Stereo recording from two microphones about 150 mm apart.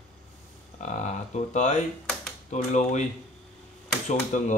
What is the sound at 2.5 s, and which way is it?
Speech, 55° left (ahead or behind).